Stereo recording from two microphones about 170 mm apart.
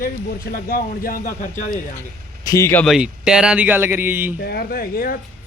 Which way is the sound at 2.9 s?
5° right (ahead or behind).